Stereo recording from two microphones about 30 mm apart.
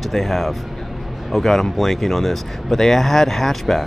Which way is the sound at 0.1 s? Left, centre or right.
Centre.